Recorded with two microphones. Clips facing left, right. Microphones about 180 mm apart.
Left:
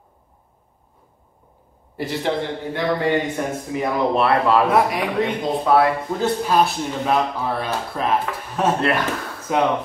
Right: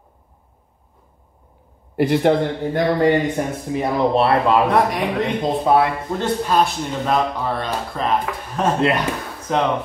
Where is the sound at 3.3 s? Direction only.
30° right (ahead or behind).